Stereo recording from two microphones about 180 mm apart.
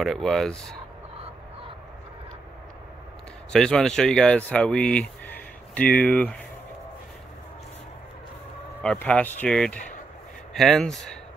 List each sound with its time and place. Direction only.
0.0 s speech: centre (ahead or behind)
3.5 s speech: 5° left (ahead or behind)
8.8 s speech: 5° left (ahead or behind)